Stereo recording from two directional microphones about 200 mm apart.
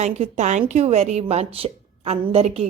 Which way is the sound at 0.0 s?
35° right (ahead or behind).